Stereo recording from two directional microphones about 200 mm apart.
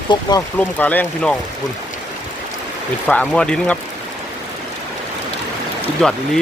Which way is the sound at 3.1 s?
5° left (ahead or behind).